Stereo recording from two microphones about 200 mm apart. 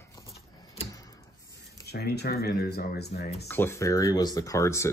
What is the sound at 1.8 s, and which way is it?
Speech, 55° left (ahead or behind).